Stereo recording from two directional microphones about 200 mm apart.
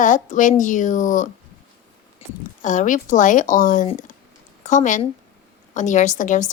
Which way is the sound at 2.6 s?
40° left (ahead or behind).